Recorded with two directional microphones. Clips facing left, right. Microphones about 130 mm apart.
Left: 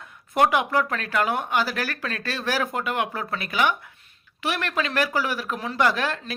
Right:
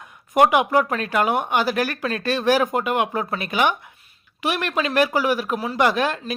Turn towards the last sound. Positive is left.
turn(degrees=-20)  # may be behind; listen again after turning